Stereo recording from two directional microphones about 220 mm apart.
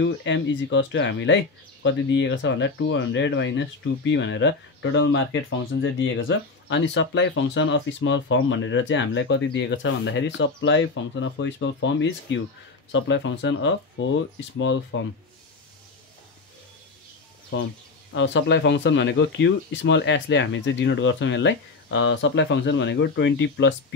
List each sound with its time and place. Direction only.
0.0 s speech: 55° left (ahead or behind)
17.5 s speech: 55° left (ahead or behind)